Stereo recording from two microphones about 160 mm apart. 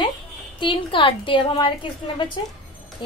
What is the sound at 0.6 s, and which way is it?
A woman's voice, 30° left (ahead or behind).